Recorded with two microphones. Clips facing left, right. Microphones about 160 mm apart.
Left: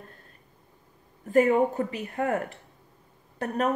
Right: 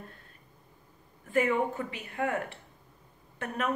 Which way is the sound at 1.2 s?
40° left (ahead or behind).